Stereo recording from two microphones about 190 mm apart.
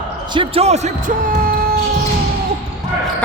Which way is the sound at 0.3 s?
30° right (ahead or behind).